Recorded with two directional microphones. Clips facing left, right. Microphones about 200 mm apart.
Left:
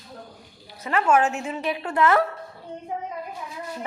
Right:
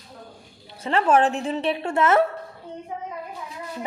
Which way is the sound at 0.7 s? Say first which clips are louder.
Right 1 dB; 30° right (ahead or behind).